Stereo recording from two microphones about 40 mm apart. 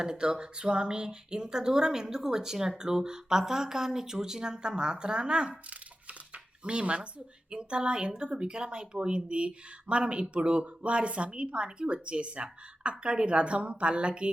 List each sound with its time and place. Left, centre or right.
0.0 s speech: centre
6.3 s a sound: right
7.5 s speech: right